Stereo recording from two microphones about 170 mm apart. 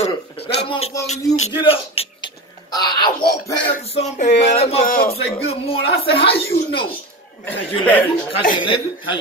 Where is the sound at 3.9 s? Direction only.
40° left (ahead or behind).